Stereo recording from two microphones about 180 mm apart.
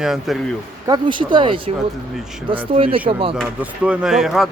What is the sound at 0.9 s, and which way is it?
Speech, 25° right (ahead or behind).